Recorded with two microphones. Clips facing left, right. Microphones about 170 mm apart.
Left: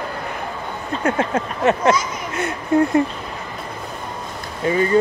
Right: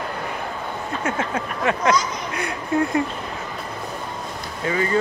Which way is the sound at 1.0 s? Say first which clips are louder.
Left 6 dB; 55° left (ahead or behind).